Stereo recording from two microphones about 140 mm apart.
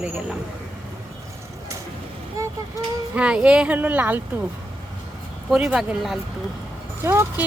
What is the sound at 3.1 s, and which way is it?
Speech, 10° right (ahead or behind).